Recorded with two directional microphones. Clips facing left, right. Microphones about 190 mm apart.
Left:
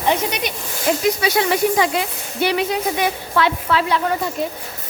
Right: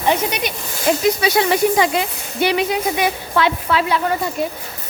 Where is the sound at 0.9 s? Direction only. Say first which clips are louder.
Right 2 dB; 20° right (ahead or behind).